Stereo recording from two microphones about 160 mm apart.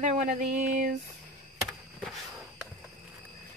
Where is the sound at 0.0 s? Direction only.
50° right (ahead or behind).